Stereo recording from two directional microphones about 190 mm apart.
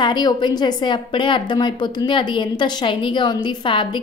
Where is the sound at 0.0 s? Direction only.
20° left (ahead or behind).